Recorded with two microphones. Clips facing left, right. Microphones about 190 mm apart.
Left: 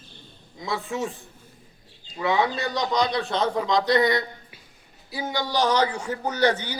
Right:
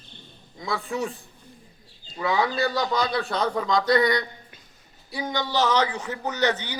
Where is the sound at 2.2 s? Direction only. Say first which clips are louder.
Even; 20° left (ahead or behind).